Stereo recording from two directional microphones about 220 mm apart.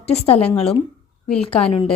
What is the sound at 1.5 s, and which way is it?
Speech, 25° left (ahead or behind).